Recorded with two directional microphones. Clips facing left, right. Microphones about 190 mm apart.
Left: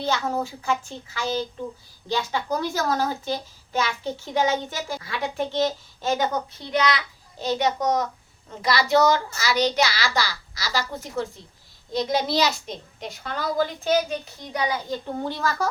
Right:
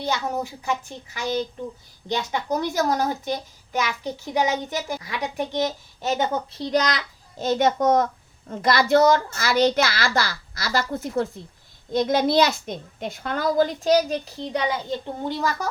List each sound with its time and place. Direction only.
0.0 s a child's voice: 15° right (ahead or behind)
6.6 s a child's voice: 35° right (ahead or behind); by 15.5 s 15° right (ahead or behind)